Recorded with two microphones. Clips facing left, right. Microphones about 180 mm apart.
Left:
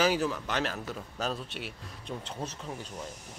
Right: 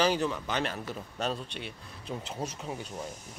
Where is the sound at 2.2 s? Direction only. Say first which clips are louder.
Right 3 dB; 10° right (ahead or behind).